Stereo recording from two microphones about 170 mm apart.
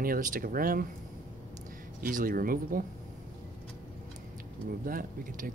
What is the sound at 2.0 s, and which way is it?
Speech, 55° right (ahead or behind).